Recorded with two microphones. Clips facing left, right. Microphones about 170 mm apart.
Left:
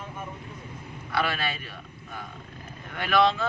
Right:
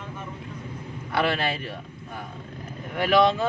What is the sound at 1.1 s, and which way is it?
Speech, 30° right (ahead or behind).